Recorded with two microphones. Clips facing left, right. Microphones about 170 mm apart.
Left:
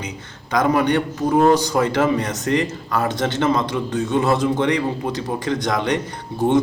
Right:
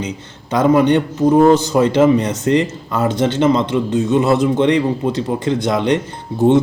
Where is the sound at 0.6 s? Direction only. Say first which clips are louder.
Right 6 dB; 25° right (ahead or behind).